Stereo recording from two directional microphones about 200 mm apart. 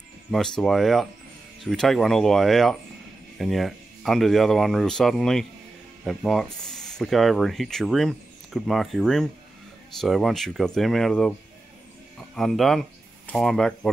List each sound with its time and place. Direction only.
0.3 s speech: centre (ahead or behind)